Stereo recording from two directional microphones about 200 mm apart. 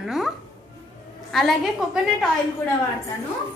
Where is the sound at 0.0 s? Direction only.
Centre (ahead or behind).